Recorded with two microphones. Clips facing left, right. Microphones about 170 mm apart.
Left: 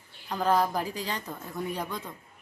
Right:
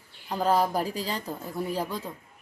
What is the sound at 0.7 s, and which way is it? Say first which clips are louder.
Speech: right 3 dB; 35° right (ahead or behind).